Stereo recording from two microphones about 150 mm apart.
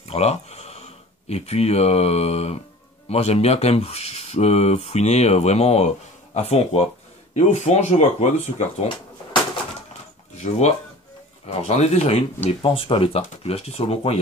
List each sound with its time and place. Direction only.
0.1 s speech: 45° left (ahead or behind)
10.3 s speech: 50° left (ahead or behind)